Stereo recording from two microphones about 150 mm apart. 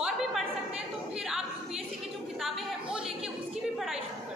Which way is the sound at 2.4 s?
5° right (ahead or behind).